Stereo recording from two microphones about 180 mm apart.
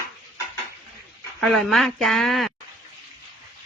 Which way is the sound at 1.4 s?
Centre (ahead or behind).